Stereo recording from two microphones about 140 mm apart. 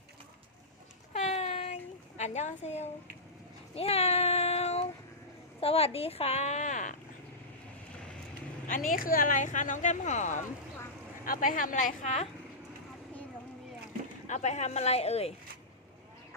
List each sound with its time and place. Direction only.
1.1 s a sound: 55° left (ahead or behind)
3.8 s child singing: 45° left (ahead or behind)
5.5 s speech: 45° left (ahead or behind); by 6.9 s 65° left (ahead or behind)
8.9 s speech: 90° left; by 10.4 s 55° left (ahead or behind)
11.3 s speech: 75° left (ahead or behind); by 12.3 s 55° left (ahead or behind)
14.3 s speech: 60° left (ahead or behind)